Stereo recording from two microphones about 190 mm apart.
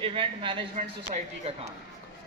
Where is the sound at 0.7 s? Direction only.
35° right (ahead or behind).